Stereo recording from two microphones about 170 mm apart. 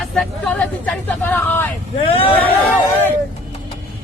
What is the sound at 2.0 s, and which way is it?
Speech, 35° left (ahead or behind).